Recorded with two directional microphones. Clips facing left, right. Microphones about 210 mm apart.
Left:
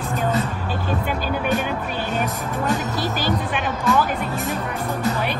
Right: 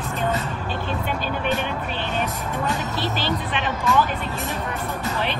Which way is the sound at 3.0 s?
10° left (ahead or behind).